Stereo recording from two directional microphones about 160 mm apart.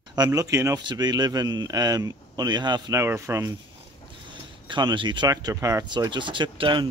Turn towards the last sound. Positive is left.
turn(degrees=-30)  # may be behind; listen again after turning